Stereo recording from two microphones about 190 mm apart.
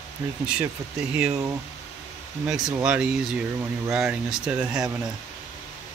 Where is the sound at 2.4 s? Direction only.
5° right (ahead or behind).